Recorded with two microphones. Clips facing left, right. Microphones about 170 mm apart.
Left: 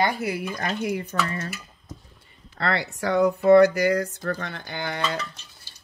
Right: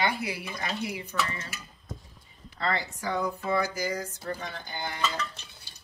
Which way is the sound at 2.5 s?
75° left (ahead or behind).